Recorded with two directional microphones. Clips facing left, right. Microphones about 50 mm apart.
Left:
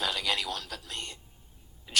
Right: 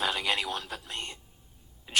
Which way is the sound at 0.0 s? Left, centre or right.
Right.